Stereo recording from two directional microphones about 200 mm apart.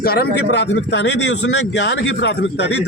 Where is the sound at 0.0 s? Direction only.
50° left (ahead or behind).